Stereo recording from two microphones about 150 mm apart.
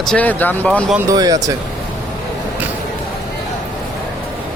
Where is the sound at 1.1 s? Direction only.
25° right (ahead or behind).